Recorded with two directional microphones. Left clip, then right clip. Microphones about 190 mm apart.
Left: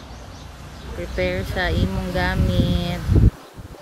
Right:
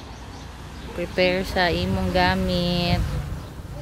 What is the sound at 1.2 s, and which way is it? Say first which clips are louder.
Speech: right 3 dB; 20° right (ahead or behind).